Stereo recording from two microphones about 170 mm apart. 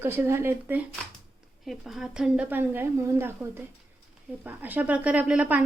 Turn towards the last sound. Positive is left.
turn(degrees=-10)  # may be behind; listen again after turning